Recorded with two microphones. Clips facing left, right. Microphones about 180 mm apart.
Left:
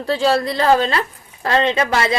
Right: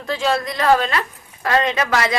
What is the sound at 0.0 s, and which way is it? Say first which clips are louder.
A woman's voice: left 4 dB; 35° left (ahead or behind).